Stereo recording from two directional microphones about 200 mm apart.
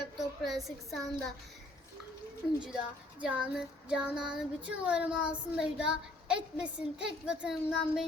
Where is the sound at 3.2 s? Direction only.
5° right (ahead or behind).